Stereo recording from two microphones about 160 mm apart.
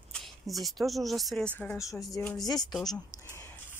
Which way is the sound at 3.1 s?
20° left (ahead or behind).